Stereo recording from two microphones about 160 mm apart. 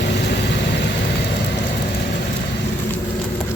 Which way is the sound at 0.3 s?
90° left.